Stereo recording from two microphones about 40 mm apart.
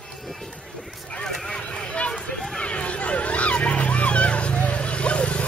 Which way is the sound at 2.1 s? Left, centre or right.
Centre.